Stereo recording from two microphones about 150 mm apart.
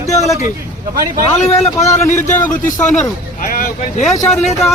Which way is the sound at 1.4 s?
45° left (ahead or behind).